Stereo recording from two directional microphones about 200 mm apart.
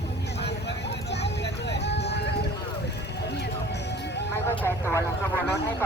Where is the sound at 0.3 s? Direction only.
55° left (ahead or behind).